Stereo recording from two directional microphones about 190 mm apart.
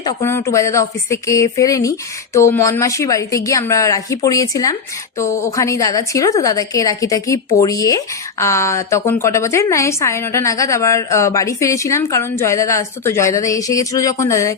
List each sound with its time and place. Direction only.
0.0 s speech: 20° left (ahead or behind)